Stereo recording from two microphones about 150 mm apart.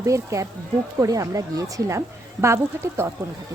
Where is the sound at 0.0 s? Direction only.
20° right (ahead or behind).